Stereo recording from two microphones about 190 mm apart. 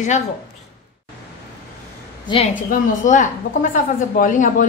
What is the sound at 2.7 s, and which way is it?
Speech, 45° left (ahead or behind).